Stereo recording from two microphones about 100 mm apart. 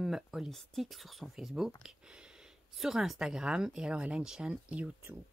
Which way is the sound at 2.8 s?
Centre (ahead or behind).